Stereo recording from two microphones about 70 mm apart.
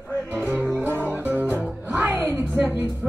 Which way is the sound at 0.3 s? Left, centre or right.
Right.